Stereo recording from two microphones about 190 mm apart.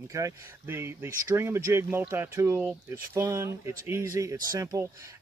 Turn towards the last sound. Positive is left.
turn(degrees=-20)  # may be behind; listen again after turning